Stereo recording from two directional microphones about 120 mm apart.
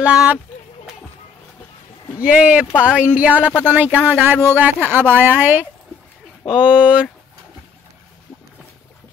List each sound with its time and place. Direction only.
0.0 s speech: 10° right (ahead or behind)
2.2 s speech: 10° right (ahead or behind)